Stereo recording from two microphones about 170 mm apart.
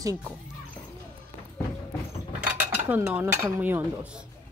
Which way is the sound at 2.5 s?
10° right (ahead or behind).